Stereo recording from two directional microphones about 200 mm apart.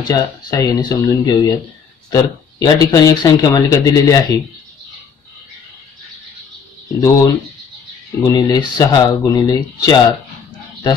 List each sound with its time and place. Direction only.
0.0 s speech: 20° left (ahead or behind)
7.0 s speech: 20° left (ahead or behind)